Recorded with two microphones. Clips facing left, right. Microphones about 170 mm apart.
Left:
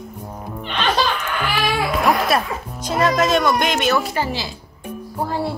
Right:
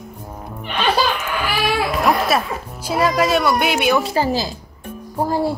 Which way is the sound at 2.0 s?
Centre (ahead or behind).